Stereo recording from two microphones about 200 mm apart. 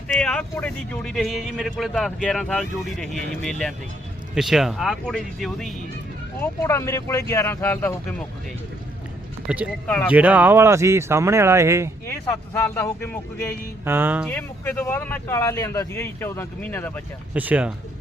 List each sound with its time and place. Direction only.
0.1 s speech: 5° left (ahead or behind)
6.4 s speech: 15° left (ahead or behind)
9.5 s speech: 5° right (ahead or behind)
9.8 s speech: 5° left (ahead or behind)
10.1 s speech: 5° right (ahead or behind)
12.0 s speech: 15° left (ahead or behind)
13.8 s speech: 10° right (ahead or behind)
14.3 s speech: 10° left (ahead or behind)
17.3 s speech: 10° right (ahead or behind)